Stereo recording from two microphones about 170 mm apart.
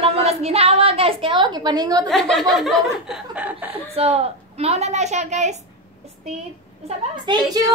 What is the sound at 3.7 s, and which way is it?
A woman's voice, 35° right (ahead or behind).